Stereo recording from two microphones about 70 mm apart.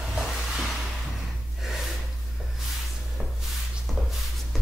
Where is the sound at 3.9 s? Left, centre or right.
Centre.